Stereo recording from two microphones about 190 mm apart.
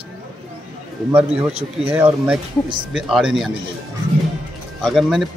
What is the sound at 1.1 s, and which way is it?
Speech, 5° right (ahead or behind).